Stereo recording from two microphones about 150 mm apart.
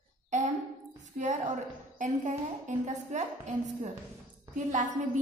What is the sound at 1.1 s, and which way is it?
A woman's voice, 55° right (ahead or behind).